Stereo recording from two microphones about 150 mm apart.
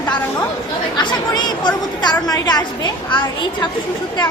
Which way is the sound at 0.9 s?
30° left (ahead or behind).